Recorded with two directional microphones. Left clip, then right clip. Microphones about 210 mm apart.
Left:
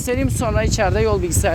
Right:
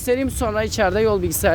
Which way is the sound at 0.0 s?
25° right (ahead or behind).